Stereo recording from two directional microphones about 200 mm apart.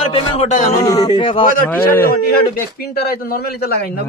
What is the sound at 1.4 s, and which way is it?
Speech, 45° left (ahead or behind).